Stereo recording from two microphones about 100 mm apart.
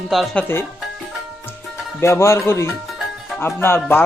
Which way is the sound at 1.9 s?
25° left (ahead or behind).